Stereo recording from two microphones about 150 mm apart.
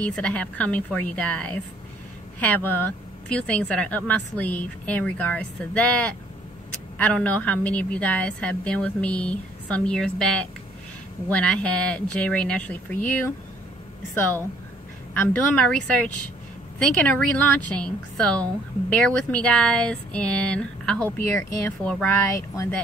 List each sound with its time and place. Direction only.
0.0 s a woman's voice: 10° left (ahead or behind)
14.1 s a woman's voice: 15° left (ahead or behind)
21.2 s a woman's voice: 15° left (ahead or behind)